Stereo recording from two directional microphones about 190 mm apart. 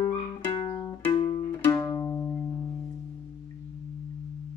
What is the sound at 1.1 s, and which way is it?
Music, 30° left (ahead or behind).